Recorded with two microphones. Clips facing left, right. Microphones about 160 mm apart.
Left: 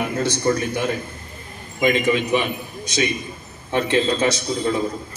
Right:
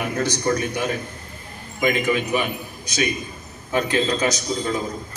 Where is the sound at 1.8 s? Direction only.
25° left (ahead or behind).